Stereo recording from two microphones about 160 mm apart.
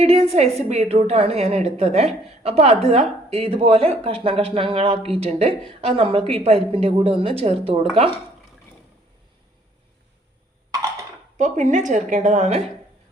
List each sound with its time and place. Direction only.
0.0 s a woman's voice: 40° right (ahead or behind)
11.3 s a woman's voice: 50° right (ahead or behind)